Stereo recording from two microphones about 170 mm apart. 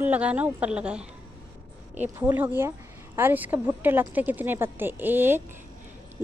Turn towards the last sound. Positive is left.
turn(degrees=-10)  # may be behind; listen again after turning